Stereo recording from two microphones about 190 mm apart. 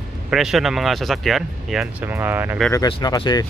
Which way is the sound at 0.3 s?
Centre (ahead or behind).